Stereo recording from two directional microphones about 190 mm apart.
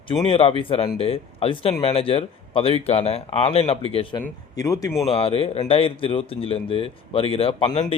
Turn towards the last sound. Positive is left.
turn(degrees=30)  # may be behind; listen again after turning